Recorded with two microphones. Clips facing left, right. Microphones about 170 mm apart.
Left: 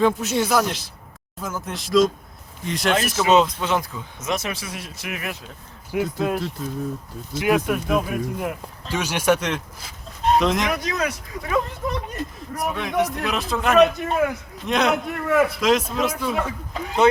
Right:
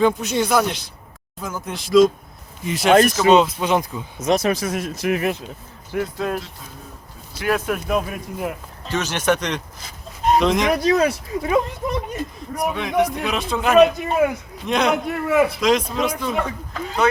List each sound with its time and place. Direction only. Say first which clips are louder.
0.0 s speech: right 1 dB; centre (ahead or behind); by 4.0 s 15° right (ahead or behind)
4.2 s speech: right 8 dB; 35° right (ahead or behind)
5.9 s speech: left 1 dB; 10° left (ahead or behind)
7.7 s speech: even; centre (ahead or behind)
8.9 s speech: even; 10° left (ahead or behind)
10.7 s speech: right 7 dB; 35° right (ahead or behind)
11.9 s speech: right 3 dB; centre (ahead or behind)
16.7 s speech: left 2 dB; 20° left (ahead or behind)